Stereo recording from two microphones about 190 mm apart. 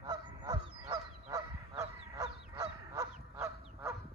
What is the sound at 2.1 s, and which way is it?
Honk, 20° right (ahead or behind).